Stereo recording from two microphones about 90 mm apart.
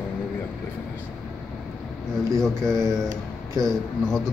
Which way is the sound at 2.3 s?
5° left (ahead or behind).